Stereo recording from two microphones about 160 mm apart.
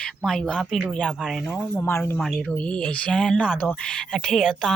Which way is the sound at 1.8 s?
15° left (ahead or behind).